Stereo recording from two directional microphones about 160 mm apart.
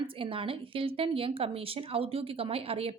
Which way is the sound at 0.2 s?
35° right (ahead or behind).